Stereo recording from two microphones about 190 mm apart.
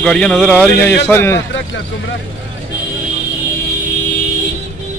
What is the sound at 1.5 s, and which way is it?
Speech, 70° left (ahead or behind).